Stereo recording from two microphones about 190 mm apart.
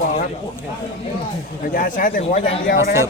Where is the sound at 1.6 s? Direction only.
45° left (ahead or behind).